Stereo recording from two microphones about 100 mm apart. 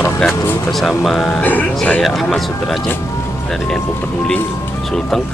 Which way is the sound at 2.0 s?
Centre (ahead or behind).